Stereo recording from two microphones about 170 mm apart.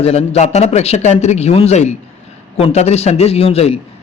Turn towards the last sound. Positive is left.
turn(degrees=35)  # may be behind; listen again after turning